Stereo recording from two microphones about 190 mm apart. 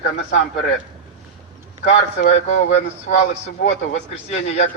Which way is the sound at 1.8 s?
40° left (ahead or behind).